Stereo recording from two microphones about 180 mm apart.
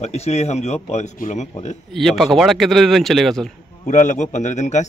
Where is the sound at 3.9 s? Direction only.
40° left (ahead or behind).